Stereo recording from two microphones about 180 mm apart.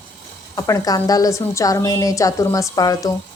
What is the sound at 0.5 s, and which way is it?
A woman's voice, 20° left (ahead or behind).